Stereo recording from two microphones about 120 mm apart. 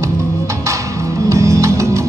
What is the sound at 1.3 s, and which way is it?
Music, 25° right (ahead or behind).